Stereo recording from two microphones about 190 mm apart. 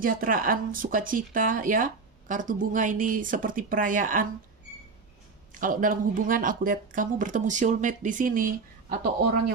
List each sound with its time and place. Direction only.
0.0 s speech: 45° right (ahead or behind)
5.6 s speech: 45° right (ahead or behind)